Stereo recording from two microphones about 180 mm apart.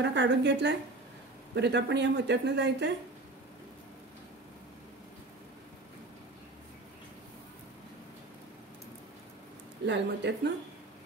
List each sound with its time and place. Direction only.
0.0 s speech: 75° right (ahead or behind)
9.8 s speech: 75° right (ahead or behind)